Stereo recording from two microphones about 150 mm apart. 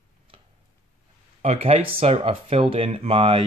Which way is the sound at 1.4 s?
50° right (ahead or behind).